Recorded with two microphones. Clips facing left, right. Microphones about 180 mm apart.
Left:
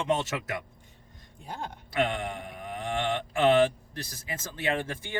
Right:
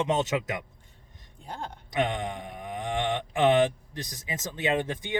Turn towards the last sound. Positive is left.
turn(degrees=-20)  # may be behind; listen again after turning